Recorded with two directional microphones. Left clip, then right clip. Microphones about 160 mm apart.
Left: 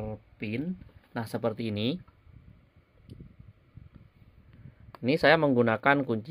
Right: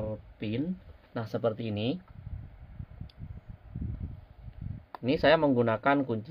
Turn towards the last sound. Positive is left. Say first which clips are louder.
# left 2 dB
turn(degrees=35)  # may be behind; listen again after turning